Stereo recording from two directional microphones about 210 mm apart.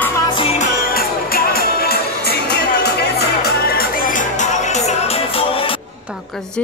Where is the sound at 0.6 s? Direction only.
45° left (ahead or behind); by 5.8 s 25° left (ahead or behind).